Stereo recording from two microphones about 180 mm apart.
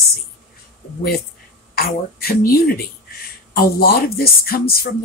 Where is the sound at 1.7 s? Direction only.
60° left (ahead or behind).